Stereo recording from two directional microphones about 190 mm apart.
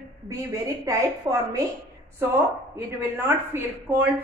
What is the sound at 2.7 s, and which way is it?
A woman's voice, 10° right (ahead or behind).